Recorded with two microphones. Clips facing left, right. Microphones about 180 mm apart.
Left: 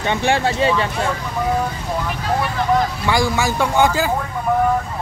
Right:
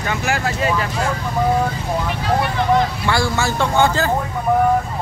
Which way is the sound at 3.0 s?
15° left (ahead or behind).